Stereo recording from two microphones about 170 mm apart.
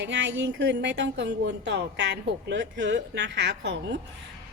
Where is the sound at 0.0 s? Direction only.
90° right.